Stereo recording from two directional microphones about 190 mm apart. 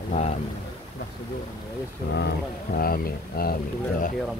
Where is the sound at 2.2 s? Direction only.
55° left (ahead or behind).